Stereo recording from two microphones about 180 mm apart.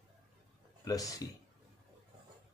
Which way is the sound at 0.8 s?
20° left (ahead or behind).